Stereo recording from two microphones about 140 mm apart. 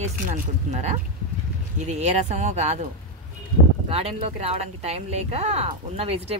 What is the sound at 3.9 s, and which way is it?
Speech, 45° right (ahead or behind).